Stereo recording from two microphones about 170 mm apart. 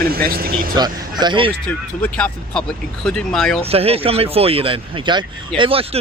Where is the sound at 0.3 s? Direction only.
60° right (ahead or behind).